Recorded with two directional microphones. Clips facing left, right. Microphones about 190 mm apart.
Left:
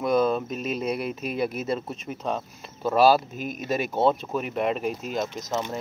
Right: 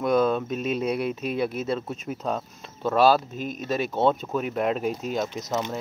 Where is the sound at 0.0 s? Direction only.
5° left (ahead or behind).